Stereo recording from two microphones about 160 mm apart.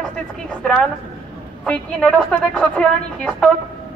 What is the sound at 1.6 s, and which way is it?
A woman's voice, 5° left (ahead or behind).